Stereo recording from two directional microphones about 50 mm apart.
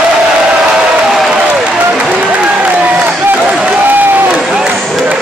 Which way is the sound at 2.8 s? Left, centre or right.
Right.